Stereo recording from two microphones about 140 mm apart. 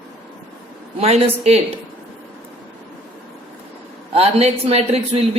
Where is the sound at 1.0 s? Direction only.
50° right (ahead or behind).